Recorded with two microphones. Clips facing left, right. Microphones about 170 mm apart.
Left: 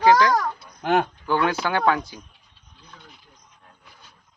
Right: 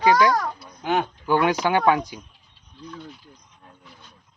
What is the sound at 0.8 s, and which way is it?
Speech, 55° left (ahead or behind).